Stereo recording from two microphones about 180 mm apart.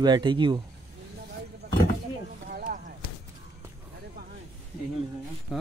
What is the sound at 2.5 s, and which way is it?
Basketball bounce, 55° right (ahead or behind).